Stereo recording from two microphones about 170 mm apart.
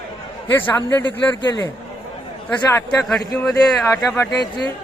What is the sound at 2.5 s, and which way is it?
Speech, 5° left (ahead or behind).